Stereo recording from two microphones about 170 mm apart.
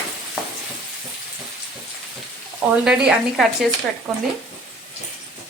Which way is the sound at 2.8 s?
Centre (ahead or behind).